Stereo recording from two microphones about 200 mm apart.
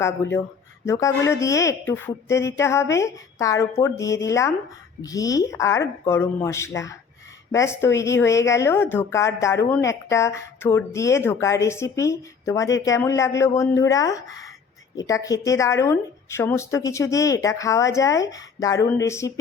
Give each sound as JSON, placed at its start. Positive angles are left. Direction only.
{"t": 0.0, "sound": "a woman's voice", "side_deg": 15}